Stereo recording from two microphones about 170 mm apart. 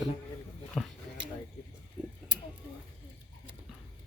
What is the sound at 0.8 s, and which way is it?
Speech, centre (ahead or behind).